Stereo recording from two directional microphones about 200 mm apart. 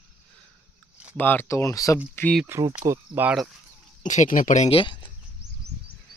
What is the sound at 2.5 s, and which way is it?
Speech, 20° right (ahead or behind).